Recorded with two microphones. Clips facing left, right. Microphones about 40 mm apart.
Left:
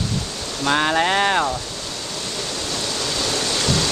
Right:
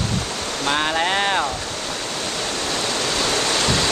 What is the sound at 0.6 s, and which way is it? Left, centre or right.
Speech, centre.